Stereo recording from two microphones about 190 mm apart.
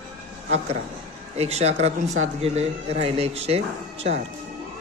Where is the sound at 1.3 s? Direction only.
35° right (ahead or behind).